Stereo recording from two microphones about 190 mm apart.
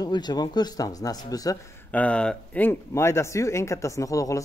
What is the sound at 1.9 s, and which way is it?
Speech, 5° left (ahead or behind).